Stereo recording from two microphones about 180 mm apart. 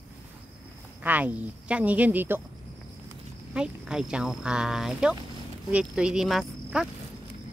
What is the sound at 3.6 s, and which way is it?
Speech, 5° right (ahead or behind).